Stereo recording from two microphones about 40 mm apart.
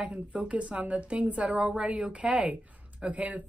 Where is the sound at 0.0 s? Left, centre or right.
Right.